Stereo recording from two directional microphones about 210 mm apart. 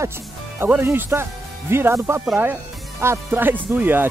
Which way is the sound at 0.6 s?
10° right (ahead or behind).